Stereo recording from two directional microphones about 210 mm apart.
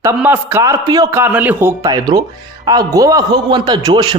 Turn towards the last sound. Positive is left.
turn(degrees=-20)  # may be behind; listen again after turning